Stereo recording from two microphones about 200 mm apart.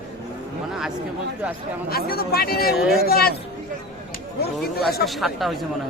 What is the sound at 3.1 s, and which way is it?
Speech, 50° left (ahead or behind).